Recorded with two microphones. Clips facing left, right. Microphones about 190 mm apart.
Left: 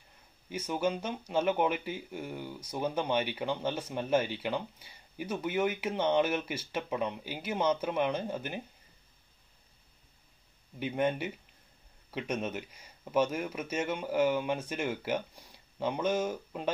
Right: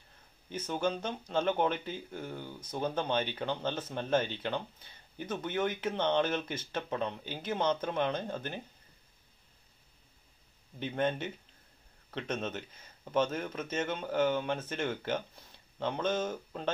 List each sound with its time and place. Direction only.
0.5 s speech: 10° left (ahead or behind)
10.8 s speech: 10° left (ahead or behind)